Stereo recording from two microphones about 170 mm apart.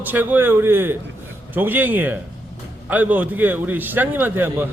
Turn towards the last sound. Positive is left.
turn(degrees=-10)  # may be behind; listen again after turning